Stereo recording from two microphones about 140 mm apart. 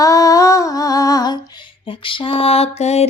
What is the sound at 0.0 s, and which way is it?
Female singing, 25° left (ahead or behind).